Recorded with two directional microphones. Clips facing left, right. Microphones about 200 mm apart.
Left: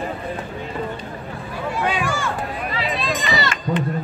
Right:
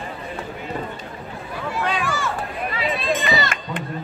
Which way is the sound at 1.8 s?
5° left (ahead or behind).